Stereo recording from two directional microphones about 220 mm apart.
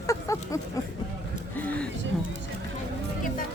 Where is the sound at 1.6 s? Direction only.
5° left (ahead or behind).